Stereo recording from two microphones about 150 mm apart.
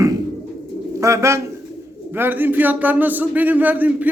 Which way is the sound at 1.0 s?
20° right (ahead or behind).